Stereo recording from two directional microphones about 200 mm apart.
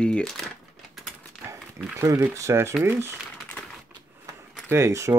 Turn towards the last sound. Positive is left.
turn(degrees=-15)  # may be behind; listen again after turning